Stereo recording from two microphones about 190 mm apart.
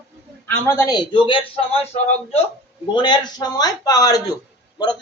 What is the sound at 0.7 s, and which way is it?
A man's voice, 15° left (ahead or behind).